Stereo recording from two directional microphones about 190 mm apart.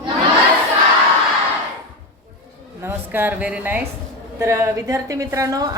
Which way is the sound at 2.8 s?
10° right (ahead or behind).